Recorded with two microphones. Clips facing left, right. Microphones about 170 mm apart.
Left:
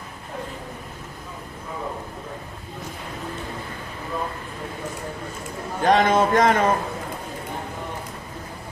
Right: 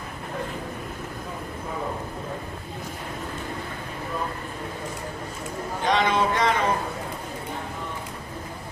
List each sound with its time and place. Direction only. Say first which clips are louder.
5.9 s speech: left 5 dB; 45° left (ahead or behind)